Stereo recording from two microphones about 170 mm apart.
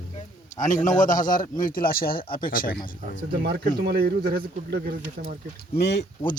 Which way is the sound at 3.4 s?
70° right (ahead or behind).